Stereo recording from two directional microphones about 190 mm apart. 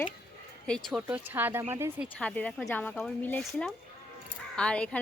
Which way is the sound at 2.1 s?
5° left (ahead or behind).